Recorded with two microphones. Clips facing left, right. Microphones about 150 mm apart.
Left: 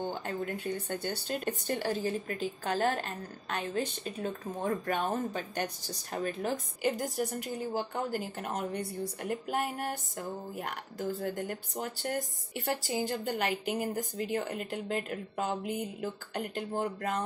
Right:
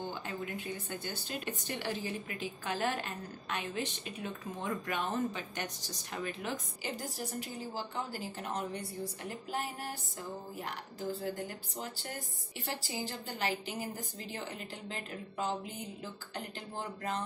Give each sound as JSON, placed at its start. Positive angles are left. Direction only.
{"t": 0.0, "sound": "a woman's voice", "side_deg": 50}